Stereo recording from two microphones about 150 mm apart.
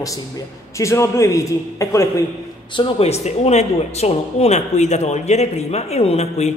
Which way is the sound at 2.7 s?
35° left (ahead or behind).